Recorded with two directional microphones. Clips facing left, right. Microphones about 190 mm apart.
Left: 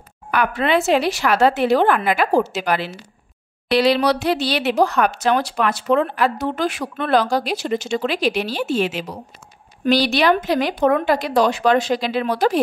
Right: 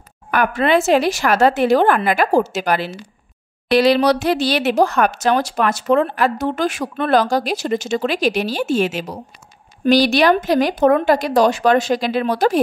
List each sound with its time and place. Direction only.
0.3 s speech: 45° right (ahead or behind)